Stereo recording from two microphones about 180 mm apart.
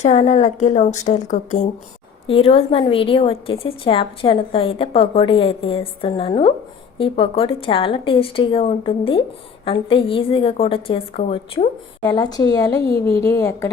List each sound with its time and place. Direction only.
0.0 s a woman's voice: 40° left (ahead or behind)
2.2 s a woman's voice: 30° left (ahead or behind)